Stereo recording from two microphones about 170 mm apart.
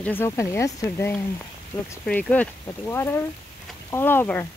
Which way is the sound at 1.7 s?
25° left (ahead or behind).